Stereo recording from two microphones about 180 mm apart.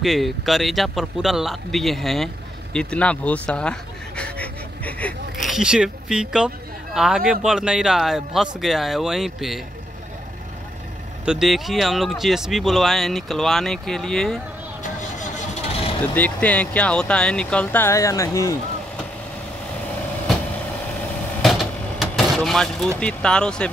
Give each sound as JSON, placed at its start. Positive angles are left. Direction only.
{"t": 0.0, "sound": "speech", "side_deg": 0}
{"t": 11.2, "sound": "speech", "side_deg": 0}
{"t": 14.8, "sound": "vehicle", "side_deg": 40}
{"t": 16.2, "sound": "speech", "side_deg": 10}
{"t": 21.4, "sound": "vehicle", "side_deg": 0}
{"t": 22.9, "sound": "speech", "side_deg": 5}